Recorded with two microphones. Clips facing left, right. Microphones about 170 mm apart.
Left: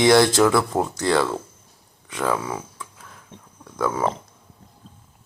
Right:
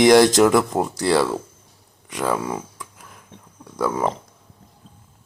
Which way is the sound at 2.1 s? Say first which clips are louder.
Right 1 dB; 15° right (ahead or behind).